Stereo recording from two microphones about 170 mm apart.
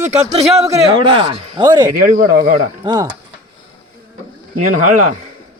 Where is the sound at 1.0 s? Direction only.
30° right (ahead or behind).